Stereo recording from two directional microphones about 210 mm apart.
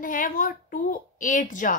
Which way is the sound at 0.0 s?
40° left (ahead or behind).